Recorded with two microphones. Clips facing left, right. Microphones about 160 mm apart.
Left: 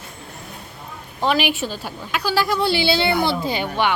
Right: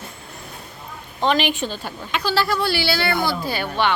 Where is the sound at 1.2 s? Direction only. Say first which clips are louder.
Even; 10° left (ahead or behind).